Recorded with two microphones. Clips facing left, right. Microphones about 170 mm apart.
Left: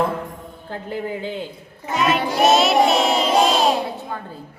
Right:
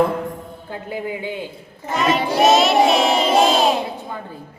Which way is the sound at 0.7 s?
10° right (ahead or behind).